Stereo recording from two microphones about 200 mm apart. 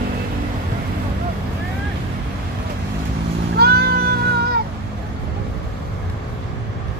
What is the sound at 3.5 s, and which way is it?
Music, 50° right (ahead or behind).